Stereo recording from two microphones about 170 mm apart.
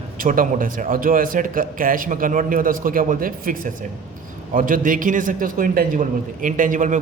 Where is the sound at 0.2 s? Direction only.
55° right (ahead or behind).